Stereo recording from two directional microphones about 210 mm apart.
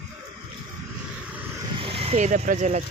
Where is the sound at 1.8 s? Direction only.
25° right (ahead or behind).